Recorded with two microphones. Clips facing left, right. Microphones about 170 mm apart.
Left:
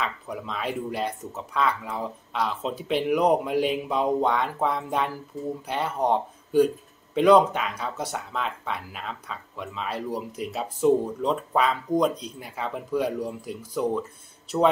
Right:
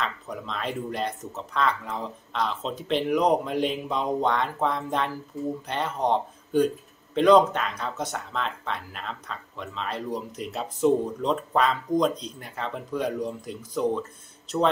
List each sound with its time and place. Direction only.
0.0 s speech: 5° left (ahead or behind)